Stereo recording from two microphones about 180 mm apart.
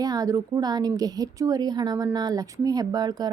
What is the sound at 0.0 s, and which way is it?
A woman's voice, 20° right (ahead or behind).